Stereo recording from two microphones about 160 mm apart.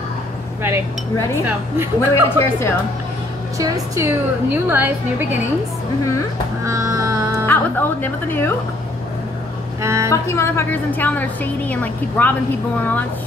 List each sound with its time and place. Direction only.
2.0 s a woman's voice: 15° left (ahead or behind)
3.5 s a woman's voice: 20° right (ahead or behind)
6.6 s music: 20° right (ahead or behind)
7.4 s a woman's voice: 10° left (ahead or behind)
9.8 s speech: 15° right (ahead or behind)
10.0 s a woman's voice: 20° left (ahead or behind)